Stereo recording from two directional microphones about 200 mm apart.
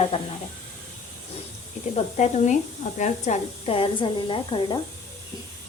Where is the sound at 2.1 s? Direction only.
35° left (ahead or behind).